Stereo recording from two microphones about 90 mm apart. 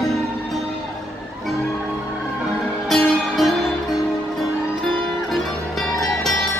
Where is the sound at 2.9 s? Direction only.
10° left (ahead or behind).